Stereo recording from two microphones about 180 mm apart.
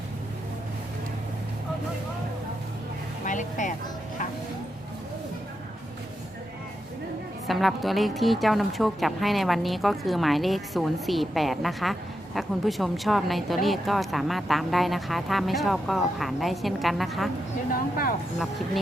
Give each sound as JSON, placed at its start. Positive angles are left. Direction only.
{"t": 3.2, "sound": "music", "side_deg": 45}
{"t": 7.4, "sound": "a woman's voice", "side_deg": 0}